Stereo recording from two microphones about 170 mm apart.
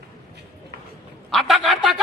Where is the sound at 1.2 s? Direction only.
Centre (ahead or behind).